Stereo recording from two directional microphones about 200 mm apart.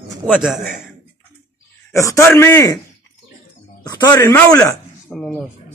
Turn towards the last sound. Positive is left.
turn(degrees=0)  # may be behind; listen again after turning